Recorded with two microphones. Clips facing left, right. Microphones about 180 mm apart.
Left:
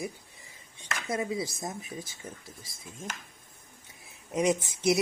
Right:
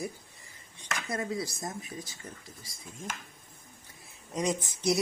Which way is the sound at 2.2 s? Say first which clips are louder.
Left 2 dB; 5° left (ahead or behind).